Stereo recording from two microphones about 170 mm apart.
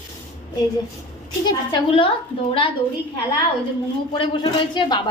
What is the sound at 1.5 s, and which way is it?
Speech, 30° left (ahead or behind).